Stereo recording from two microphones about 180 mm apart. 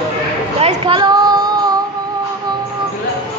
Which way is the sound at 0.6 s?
30° right (ahead or behind).